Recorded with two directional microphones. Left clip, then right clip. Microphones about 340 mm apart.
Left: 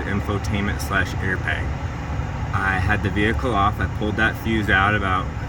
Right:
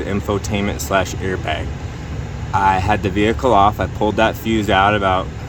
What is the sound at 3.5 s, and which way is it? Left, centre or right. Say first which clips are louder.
Speech: right 10 dB; left.